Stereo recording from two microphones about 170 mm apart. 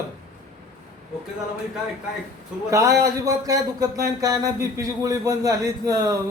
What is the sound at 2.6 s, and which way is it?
A man's voice, 20° right (ahead or behind).